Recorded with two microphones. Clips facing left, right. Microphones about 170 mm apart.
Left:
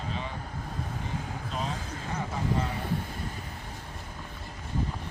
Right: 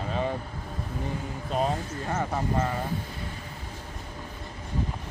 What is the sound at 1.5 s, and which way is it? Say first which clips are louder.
Vehicle: right 9 dB; 50° right (ahead or behind).